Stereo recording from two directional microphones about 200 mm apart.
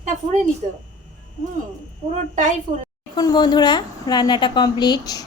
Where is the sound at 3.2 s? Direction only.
20° left (ahead or behind).